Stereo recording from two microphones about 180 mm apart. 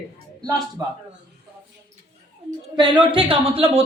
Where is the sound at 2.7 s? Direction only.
25° right (ahead or behind).